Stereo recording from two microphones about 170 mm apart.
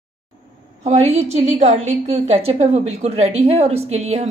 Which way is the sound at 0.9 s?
40° right (ahead or behind).